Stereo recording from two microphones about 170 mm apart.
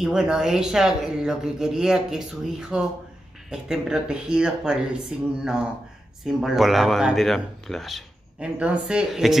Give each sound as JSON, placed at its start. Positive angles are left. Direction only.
{"t": 0.0, "sound": "speech", "side_deg": -5}